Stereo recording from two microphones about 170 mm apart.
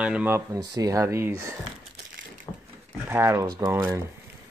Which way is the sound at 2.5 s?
20° left (ahead or behind).